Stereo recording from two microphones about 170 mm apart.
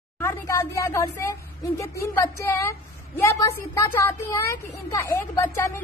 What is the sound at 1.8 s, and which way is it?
A woman's voice, 15° left (ahead or behind).